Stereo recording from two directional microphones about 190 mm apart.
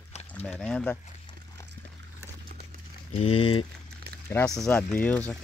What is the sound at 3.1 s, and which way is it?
Speech, 30° left (ahead or behind).